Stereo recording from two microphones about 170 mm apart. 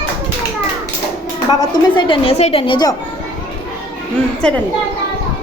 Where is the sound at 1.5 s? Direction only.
25° left (ahead or behind).